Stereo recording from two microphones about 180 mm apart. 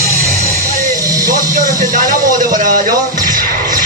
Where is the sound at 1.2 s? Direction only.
50° right (ahead or behind).